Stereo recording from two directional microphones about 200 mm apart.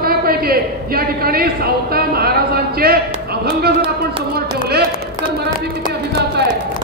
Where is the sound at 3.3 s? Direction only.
55° right (ahead or behind).